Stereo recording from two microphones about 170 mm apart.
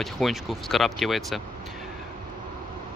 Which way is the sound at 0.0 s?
Centre (ahead or behind).